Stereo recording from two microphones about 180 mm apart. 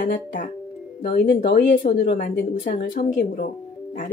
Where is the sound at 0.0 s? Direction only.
50° left (ahead or behind).